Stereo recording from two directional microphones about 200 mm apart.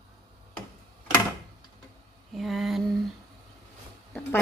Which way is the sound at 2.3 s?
Centre (ahead or behind).